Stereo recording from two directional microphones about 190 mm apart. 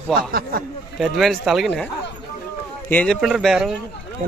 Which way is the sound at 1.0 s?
Centre (ahead or behind).